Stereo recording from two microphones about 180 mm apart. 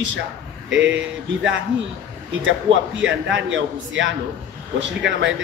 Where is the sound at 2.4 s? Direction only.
90° right.